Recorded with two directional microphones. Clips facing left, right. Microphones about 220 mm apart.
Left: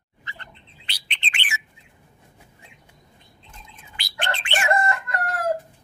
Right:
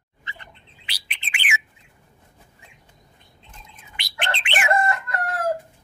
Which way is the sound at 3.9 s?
20° right (ahead or behind).